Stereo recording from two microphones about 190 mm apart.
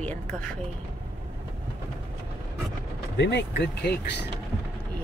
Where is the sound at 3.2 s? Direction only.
65° left (ahead or behind).